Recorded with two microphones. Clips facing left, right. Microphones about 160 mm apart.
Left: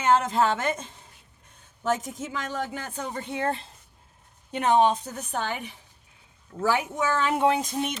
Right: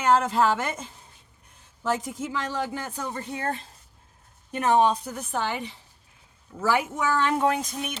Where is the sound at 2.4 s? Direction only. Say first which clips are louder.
Even; 30° right (ahead or behind).